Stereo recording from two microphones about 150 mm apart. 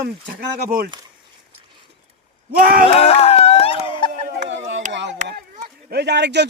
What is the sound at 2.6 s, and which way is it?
Speech, 70° right (ahead or behind).